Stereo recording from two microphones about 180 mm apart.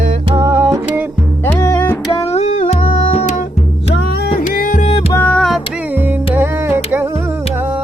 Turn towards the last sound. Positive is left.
turn(degrees=-15)  # may be behind; listen again after turning